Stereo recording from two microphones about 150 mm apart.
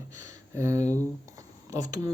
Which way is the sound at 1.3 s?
20° right (ahead or behind).